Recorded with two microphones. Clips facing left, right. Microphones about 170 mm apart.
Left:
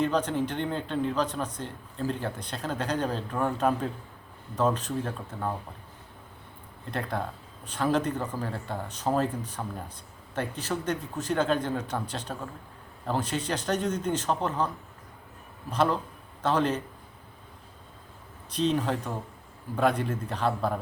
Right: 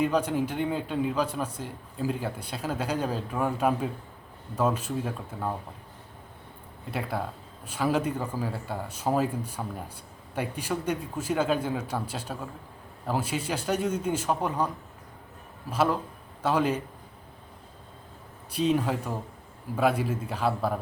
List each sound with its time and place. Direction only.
0.0 s speech: 10° right (ahead or behind)
6.9 s speech: 5° right (ahead or behind)
15.7 s speech: 5° right (ahead or behind)
18.5 s speech: 10° right (ahead or behind)